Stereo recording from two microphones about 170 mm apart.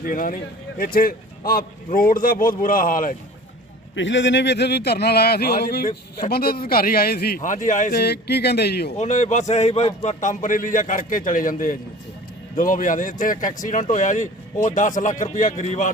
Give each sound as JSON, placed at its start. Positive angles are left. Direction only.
{"t": 0.0, "sound": "a man's voice", "side_deg": 55}
{"t": 3.9, "sound": "a man's voice", "side_deg": 90}
{"t": 7.9, "sound": "speech", "side_deg": 75}
{"t": 9.0, "sound": "speech", "side_deg": 45}